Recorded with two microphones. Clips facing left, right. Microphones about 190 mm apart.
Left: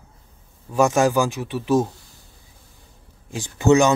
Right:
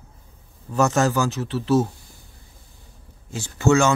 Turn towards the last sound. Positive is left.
turn(degrees=15)  # may be behind; listen again after turning